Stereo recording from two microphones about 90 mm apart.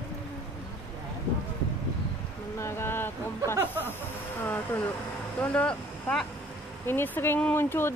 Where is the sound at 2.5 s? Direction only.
30° left (ahead or behind).